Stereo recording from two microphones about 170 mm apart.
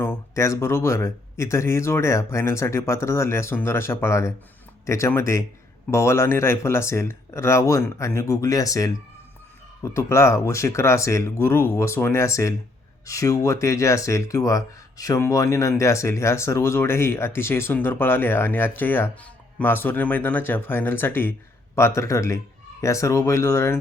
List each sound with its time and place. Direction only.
0.0 s speech: 15° left (ahead or behind)